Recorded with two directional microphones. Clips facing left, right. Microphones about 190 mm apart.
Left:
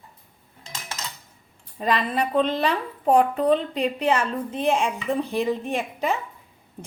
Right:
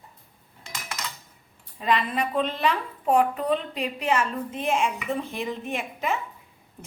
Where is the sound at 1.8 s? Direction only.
40° left (ahead or behind).